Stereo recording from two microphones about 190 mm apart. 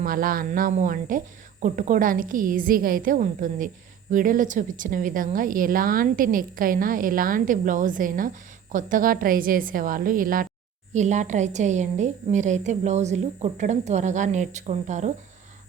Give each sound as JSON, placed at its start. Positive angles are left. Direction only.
{"t": 0.0, "sound": "a woman's voice", "side_deg": -50}